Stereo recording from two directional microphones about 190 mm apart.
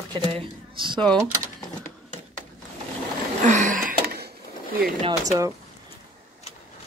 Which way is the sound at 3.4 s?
40° right (ahead or behind).